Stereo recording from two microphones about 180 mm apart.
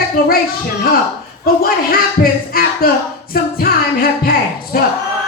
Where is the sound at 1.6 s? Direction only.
55° left (ahead or behind).